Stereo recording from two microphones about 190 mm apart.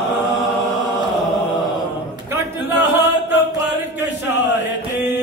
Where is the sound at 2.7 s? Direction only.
65° left (ahead or behind).